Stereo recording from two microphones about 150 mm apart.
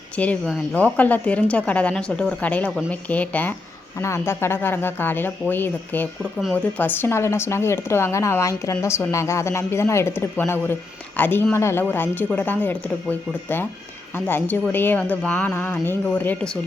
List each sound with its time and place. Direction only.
0.2 s a woman's voice: 10° left (ahead or behind)